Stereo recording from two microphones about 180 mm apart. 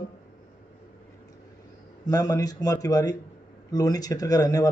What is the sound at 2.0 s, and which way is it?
A man's voice, 20° left (ahead or behind).